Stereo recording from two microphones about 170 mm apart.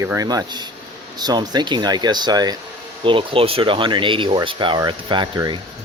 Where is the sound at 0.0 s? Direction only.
20° right (ahead or behind).